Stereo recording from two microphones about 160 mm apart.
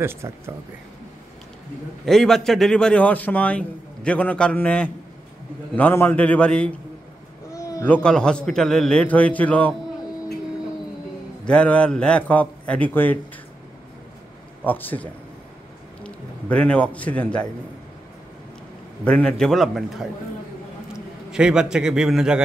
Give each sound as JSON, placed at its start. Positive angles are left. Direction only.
{"t": 0.0, "sound": "speech", "side_deg": -15}
{"t": 2.0, "sound": "a man's voice", "side_deg": 0}
{"t": 7.5, "sound": "a sound", "side_deg": 20}
{"t": 7.8, "sound": "a man's voice", "side_deg": 5}
{"t": 11.4, "sound": "a man's voice", "side_deg": 5}
{"t": 14.6, "sound": "a man's voice", "side_deg": 10}
{"t": 19.0, "sound": "a man's voice", "side_deg": 5}